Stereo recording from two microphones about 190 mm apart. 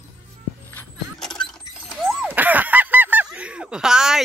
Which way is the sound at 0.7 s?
5° left (ahead or behind).